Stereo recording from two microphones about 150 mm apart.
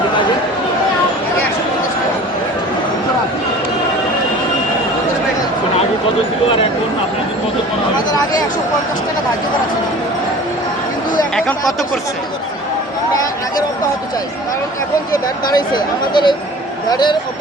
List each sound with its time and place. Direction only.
15.4 s speech: 30° left (ahead or behind)